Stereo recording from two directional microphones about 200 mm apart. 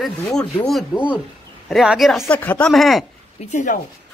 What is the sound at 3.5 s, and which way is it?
Speech, 40° left (ahead or behind).